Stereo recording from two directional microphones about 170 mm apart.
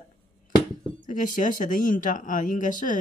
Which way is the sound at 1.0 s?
50° left (ahead or behind).